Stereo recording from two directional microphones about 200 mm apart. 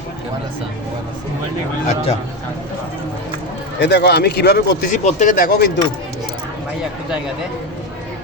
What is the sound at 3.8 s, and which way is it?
Speech, 60° left (ahead or behind).